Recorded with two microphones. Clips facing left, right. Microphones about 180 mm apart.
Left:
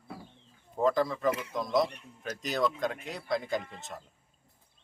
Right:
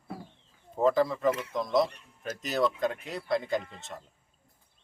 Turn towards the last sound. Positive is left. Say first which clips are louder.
# right 2 dB
turn(degrees=0)  # may be behind; listen again after turning